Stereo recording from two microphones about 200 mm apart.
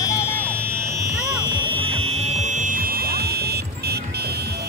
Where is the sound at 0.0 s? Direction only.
20° left (ahead or behind).